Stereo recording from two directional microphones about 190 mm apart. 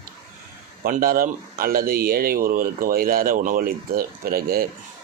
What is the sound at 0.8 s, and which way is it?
A man's voice, 50° right (ahead or behind).